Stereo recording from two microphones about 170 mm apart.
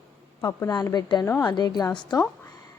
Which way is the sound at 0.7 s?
25° left (ahead or behind).